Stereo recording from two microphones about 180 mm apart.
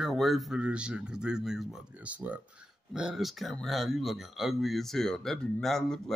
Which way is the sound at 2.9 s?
5° right (ahead or behind).